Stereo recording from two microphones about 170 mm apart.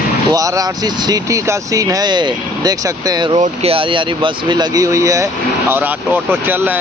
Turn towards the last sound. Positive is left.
turn(degrees=-10)  # may be behind; listen again after turning